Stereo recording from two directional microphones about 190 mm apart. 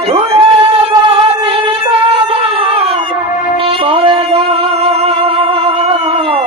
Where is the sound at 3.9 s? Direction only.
30° right (ahead or behind).